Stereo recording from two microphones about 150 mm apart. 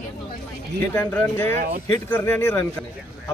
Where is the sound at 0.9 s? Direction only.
15° left (ahead or behind).